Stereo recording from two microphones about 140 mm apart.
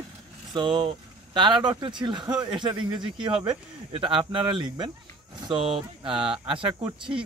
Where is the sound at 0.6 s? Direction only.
35° right (ahead or behind).